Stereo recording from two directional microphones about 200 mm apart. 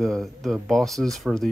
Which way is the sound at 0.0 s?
Centre (ahead or behind).